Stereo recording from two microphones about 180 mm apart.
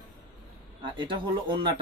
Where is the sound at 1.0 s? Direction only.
25° right (ahead or behind).